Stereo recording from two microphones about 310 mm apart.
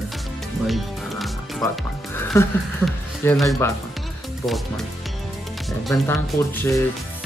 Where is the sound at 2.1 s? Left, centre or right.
Centre.